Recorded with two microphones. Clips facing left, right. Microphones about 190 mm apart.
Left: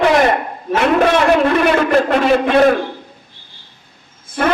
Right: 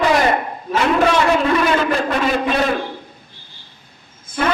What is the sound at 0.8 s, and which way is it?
A man's voice, 60° left (ahead or behind).